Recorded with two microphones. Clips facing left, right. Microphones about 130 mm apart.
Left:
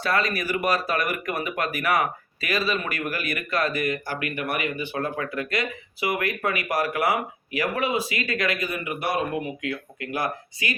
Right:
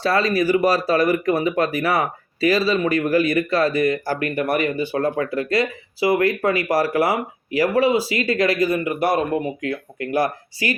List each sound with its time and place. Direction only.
0.0 s speech: 30° right (ahead or behind)